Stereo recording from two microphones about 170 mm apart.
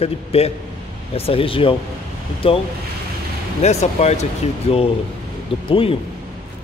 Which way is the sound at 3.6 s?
40° left (ahead or behind).